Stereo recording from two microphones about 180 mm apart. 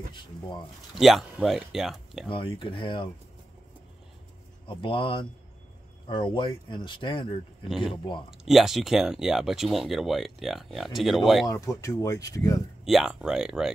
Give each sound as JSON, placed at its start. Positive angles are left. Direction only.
{"t": 0.1, "sound": "speech", "side_deg": 25}
{"t": 0.9, "sound": "speech", "side_deg": 0}
{"t": 2.2, "sound": "speech", "side_deg": 30}
{"t": 4.6, "sound": "speech", "side_deg": 30}
{"t": 8.3, "sound": "speech", "side_deg": 0}
{"t": 11.4, "sound": "speech", "side_deg": 15}
{"t": 12.8, "sound": "speech", "side_deg": 0}